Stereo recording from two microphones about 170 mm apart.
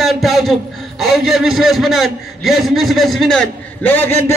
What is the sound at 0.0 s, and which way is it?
A man's voice, centre (ahead or behind).